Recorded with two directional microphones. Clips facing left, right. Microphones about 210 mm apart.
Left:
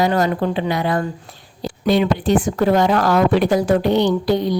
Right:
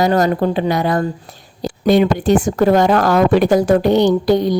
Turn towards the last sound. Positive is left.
turn(degrees=-45)  # may be behind; listen again after turning